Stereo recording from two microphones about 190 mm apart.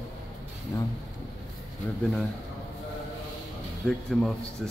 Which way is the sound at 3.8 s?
Centre (ahead or behind).